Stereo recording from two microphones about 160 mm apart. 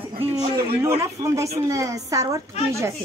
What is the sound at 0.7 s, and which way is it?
A woman's voice, 15° right (ahead or behind).